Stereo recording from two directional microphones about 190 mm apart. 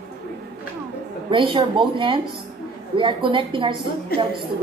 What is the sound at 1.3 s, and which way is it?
A woman's voice, 25° right (ahead or behind).